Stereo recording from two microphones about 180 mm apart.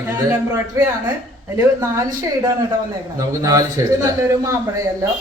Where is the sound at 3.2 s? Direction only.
20° right (ahead or behind).